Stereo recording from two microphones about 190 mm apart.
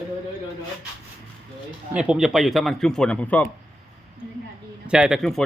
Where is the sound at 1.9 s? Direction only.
5° right (ahead or behind).